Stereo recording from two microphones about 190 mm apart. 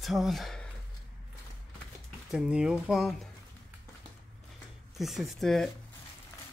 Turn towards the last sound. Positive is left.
turn(degrees=0)  # may be behind; listen again after turning